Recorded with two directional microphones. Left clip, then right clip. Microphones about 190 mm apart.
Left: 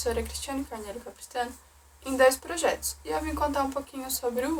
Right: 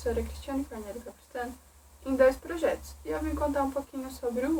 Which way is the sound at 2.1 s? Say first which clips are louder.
Left 2 dB; 15° left (ahead or behind).